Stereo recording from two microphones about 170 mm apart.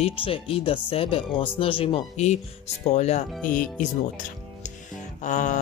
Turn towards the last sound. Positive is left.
turn(degrees=45)  # may be behind; listen again after turning